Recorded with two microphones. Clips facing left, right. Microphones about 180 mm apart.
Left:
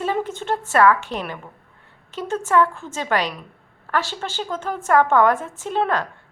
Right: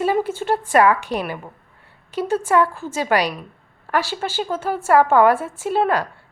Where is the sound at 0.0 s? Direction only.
10° right (ahead or behind).